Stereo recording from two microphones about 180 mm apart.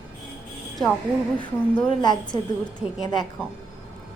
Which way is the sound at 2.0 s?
25° left (ahead or behind).